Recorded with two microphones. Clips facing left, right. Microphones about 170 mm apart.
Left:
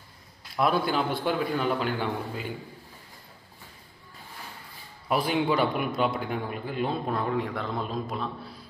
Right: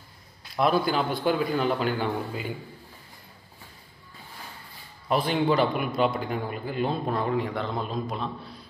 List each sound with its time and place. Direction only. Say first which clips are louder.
0.6 s a man's voice: right 2 dB; centre (ahead or behind)
5.0 s a man's voice: right 1 dB; 5° left (ahead or behind)